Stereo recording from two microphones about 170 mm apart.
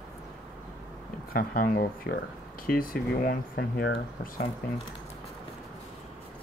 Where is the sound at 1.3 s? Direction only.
55° left (ahead or behind).